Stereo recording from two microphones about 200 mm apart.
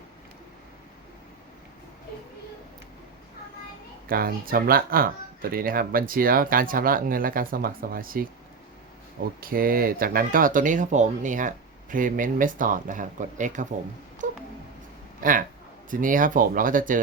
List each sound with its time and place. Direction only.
4.1 s speech: 45° right (ahead or behind)
9.4 s speech: 45° right (ahead or behind)
15.2 s speech: 40° right (ahead or behind)